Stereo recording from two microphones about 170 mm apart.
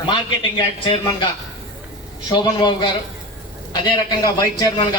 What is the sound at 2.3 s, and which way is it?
Speech, 25° left (ahead or behind).